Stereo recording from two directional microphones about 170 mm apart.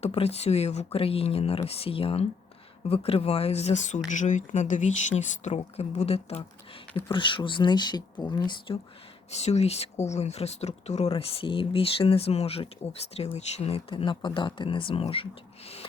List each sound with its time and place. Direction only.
0.0 s speech: 35° left (ahead or behind)
9.3 s speech: 40° left (ahead or behind)